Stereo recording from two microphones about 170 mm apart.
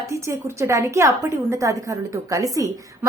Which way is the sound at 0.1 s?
15° right (ahead or behind).